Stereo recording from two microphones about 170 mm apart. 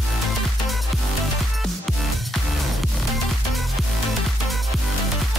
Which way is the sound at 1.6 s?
Centre (ahead or behind).